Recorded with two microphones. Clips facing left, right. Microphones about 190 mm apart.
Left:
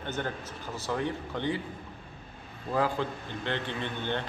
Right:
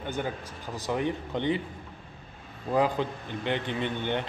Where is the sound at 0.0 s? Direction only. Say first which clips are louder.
Right 2 dB; 10° right (ahead or behind).